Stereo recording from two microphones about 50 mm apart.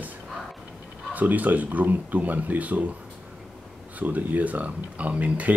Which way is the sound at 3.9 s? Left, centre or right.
Right.